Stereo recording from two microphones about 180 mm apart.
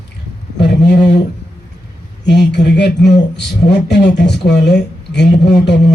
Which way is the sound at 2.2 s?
70° left (ahead or behind).